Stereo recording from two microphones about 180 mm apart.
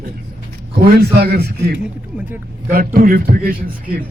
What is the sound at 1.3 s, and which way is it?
A man's voice, 65° right (ahead or behind).